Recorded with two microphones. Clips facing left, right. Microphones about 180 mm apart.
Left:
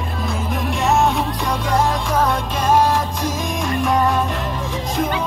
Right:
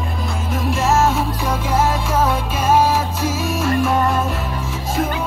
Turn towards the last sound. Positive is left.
turn(degrees=-5)  # may be behind; listen again after turning